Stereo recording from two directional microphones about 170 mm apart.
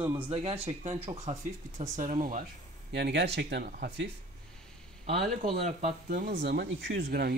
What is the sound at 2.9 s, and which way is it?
Speech, 80° right.